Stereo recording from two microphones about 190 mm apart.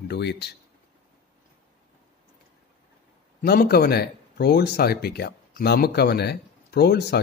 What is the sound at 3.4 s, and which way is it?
Speech, 50° left (ahead or behind).